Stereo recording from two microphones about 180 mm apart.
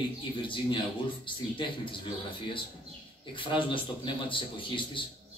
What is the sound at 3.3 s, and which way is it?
A man's voice, 30° left (ahead or behind).